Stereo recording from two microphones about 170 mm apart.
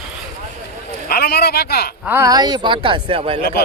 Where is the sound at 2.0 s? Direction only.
15° right (ahead or behind); by 3.4 s 35° right (ahead or behind).